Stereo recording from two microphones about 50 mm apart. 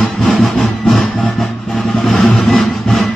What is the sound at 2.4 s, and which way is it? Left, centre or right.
Sawing, centre.